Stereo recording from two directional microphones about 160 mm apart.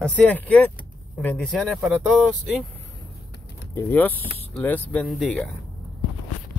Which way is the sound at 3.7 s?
10° left (ahead or behind).